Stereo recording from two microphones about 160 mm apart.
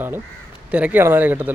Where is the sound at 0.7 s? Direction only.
10° right (ahead or behind).